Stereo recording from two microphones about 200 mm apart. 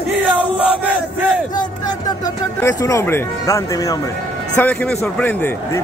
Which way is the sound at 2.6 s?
15° left (ahead or behind).